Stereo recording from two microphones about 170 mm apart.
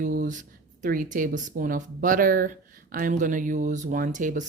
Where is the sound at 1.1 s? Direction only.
50° right (ahead or behind).